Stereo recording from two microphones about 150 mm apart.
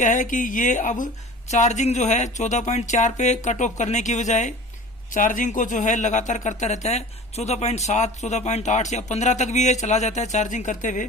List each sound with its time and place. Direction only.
0.0 s speech: 60° left (ahead or behind)